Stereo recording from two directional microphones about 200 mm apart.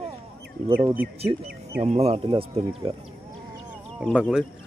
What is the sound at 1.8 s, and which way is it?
Speech, 30° right (ahead or behind).